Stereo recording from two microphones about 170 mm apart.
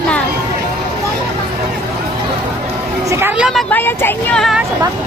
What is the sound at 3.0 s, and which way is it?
Speech, 15° right (ahead or behind).